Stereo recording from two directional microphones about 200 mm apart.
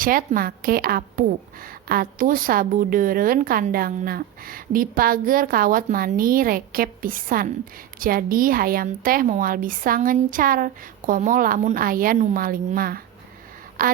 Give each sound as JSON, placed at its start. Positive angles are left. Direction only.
{"t": 0.0, "sound": "a woman's voice", "side_deg": -45}